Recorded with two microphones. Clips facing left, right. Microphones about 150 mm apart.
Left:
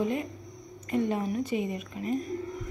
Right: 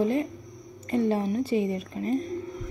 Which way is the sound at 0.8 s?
30° right (ahead or behind).